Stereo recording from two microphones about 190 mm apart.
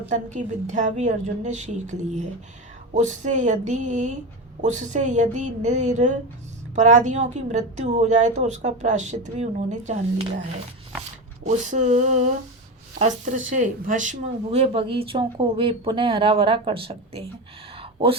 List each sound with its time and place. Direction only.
0.1 s a woman's voice: 40° right (ahead or behind)
11.4 s a woman's voice: 40° right (ahead or behind)
17.7 s a sound: 30° right (ahead or behind)